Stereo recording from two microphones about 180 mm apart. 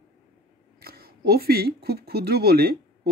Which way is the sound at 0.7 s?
60° right (ahead or behind).